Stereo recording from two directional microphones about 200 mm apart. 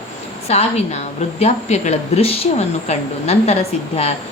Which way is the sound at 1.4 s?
35° left (ahead or behind).